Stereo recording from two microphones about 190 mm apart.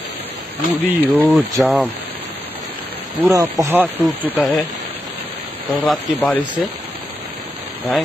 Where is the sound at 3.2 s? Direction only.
20° right (ahead or behind).